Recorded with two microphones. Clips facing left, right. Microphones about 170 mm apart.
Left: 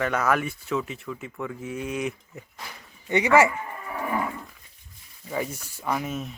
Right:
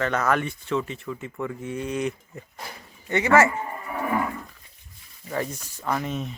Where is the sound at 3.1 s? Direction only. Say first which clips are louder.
Even; 15° left (ahead or behind).